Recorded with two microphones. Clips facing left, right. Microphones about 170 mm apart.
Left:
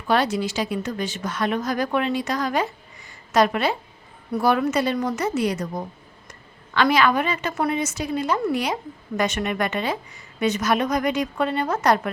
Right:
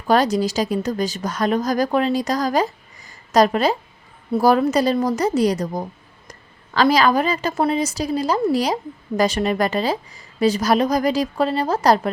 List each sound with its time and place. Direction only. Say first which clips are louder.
0.1 s a woman's voice: right 4 dB; 40° right (ahead or behind)